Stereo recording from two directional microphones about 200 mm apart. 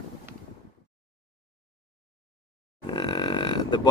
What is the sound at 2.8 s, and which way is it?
Grunt, 20° left (ahead or behind).